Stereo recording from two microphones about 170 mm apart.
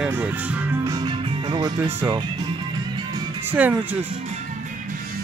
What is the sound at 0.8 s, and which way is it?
Music, 25° right (ahead or behind).